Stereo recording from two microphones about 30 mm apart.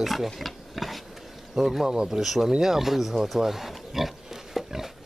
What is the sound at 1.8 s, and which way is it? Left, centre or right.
Speech, right.